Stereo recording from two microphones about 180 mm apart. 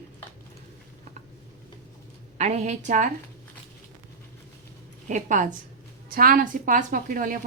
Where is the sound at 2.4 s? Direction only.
40° right (ahead or behind).